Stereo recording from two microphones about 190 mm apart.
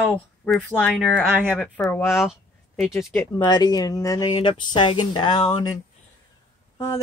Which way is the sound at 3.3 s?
20° left (ahead or behind).